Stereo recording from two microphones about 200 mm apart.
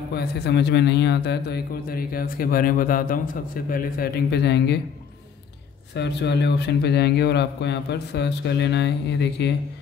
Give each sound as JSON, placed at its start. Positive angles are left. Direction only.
{"t": 0.1, "sound": "a man's voice", "side_deg": 55}
{"t": 5.9, "sound": "speech", "side_deg": 60}